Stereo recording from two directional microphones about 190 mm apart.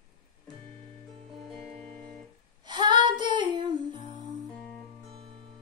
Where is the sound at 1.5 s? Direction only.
Centre (ahead or behind).